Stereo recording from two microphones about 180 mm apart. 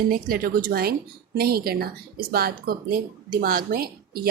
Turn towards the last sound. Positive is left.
turn(degrees=-55)  # may be behind; listen again after turning